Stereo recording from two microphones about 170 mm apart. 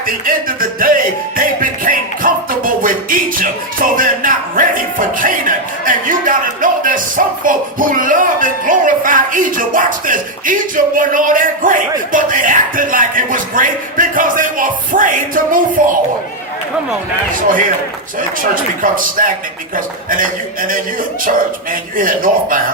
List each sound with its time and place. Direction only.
0.0 s music: 55° right (ahead or behind)
18.5 s music: 55° right (ahead or behind)